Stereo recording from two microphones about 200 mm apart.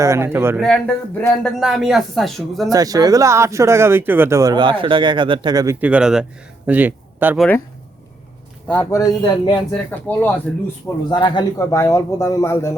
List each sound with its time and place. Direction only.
0.0 s speech: 15° right (ahead or behind)
1.2 s speech: 5° left (ahead or behind)
2.6 s speech: 20° right (ahead or behind)
5.8 s speech: 5° right (ahead or behind)
8.6 s speech: 10° left (ahead or behind)
9.5 s speech: 10° left (ahead or behind)
10.8 s speech: 20° left (ahead or behind)